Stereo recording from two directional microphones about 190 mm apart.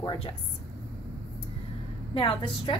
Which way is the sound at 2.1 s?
25° left (ahead or behind).